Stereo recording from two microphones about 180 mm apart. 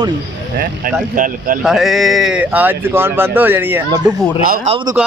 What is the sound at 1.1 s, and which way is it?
Speech, 50° right (ahead or behind).